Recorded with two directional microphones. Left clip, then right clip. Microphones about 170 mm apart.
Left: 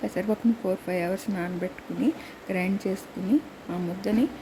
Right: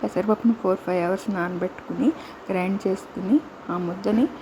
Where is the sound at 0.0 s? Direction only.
5° right (ahead or behind).